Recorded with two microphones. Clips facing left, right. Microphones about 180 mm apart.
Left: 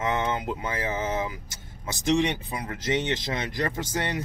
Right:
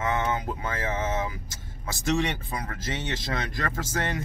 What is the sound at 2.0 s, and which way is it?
Speech, 15° left (ahead or behind).